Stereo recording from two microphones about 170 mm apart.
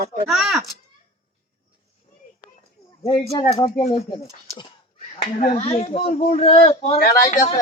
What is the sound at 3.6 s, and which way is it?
Speech, 30° left (ahead or behind).